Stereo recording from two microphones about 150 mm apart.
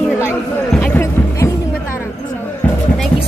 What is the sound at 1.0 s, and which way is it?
Music, 20° left (ahead or behind).